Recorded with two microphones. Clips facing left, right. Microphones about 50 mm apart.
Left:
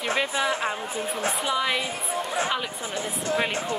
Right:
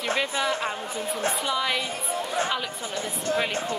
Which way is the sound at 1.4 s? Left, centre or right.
Centre.